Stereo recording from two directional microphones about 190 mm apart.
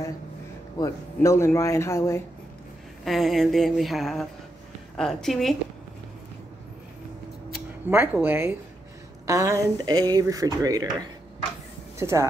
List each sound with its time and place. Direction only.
0.7 s speech: 15° left (ahead or behind)
3.1 s a sound: centre (ahead or behind)
7.9 s speech: 10° right (ahead or behind)
12.0 s speech: 15° right (ahead or behind)